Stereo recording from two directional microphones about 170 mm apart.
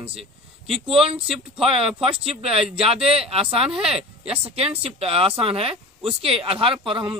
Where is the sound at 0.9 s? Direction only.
35° right (ahead or behind).